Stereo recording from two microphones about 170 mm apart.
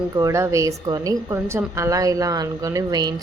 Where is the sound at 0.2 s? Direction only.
20° right (ahead or behind).